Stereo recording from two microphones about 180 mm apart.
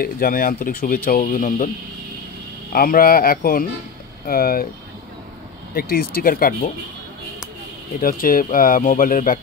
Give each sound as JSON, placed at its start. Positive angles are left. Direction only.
{"t": 0.0, "sound": "speech", "side_deg": 55}
{"t": 2.7, "sound": "speech", "side_deg": 55}
{"t": 5.8, "sound": "speech", "side_deg": 55}
{"t": 8.0, "sound": "speech", "side_deg": 50}